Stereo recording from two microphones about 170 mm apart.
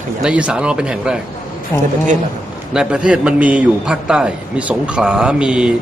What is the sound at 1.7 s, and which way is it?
Speech, 15° left (ahead or behind).